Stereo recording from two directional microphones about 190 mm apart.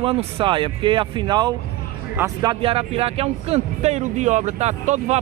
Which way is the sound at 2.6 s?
30° right (ahead or behind).